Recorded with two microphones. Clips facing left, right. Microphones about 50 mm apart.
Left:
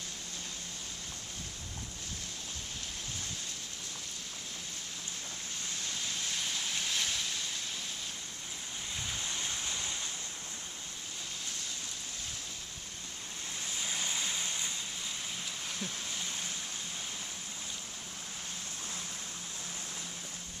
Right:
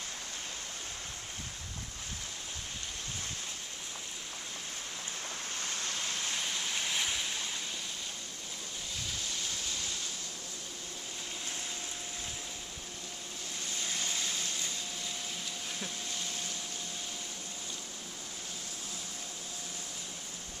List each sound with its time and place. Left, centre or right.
6.5 s waves: centre
9.2 s a sound: left
13.7 s vehicle: centre